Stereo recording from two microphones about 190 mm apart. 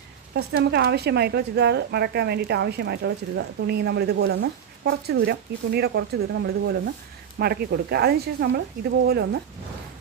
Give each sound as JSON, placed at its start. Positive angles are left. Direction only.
{"t": 0.3, "sound": "speech", "side_deg": -60}